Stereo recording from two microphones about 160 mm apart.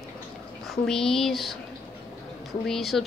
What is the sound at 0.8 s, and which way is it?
Speech, 5° left (ahead or behind).